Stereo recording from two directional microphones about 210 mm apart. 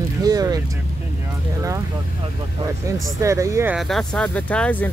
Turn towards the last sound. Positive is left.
turn(degrees=10)  # may be behind; listen again after turning